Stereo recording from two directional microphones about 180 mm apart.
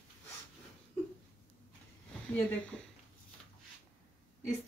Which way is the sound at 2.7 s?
10° left (ahead or behind).